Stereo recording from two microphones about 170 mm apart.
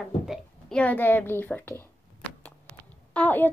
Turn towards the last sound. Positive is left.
turn(degrees=10)  # may be behind; listen again after turning